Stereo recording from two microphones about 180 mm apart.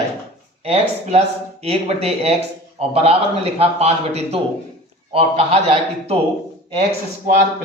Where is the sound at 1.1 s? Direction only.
35° right (ahead or behind).